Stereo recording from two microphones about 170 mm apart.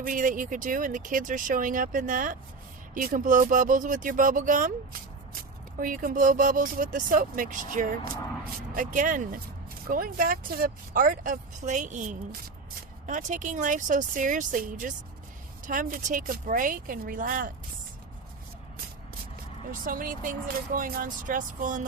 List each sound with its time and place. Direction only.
0.0 s speech: 50° right (ahead or behind)
19.8 s speech: 55° right (ahead or behind)